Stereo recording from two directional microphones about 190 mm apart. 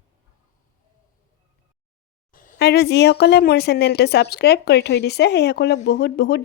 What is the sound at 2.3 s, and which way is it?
Speech, 45° left (ahead or behind).